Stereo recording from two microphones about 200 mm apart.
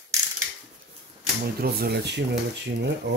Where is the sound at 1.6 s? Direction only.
50° right (ahead or behind).